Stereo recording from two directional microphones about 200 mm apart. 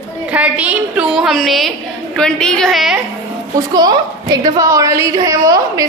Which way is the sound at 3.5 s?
20° right (ahead or behind).